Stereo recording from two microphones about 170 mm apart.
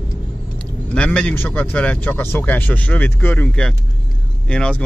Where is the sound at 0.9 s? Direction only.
5° left (ahead or behind).